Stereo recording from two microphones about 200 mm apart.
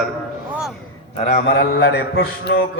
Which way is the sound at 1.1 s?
35° left (ahead or behind).